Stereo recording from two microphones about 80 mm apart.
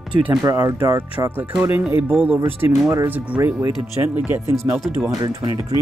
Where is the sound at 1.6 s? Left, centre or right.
Right.